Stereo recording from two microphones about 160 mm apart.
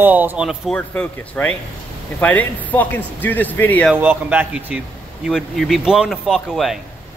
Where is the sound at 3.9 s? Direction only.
10° right (ahead or behind).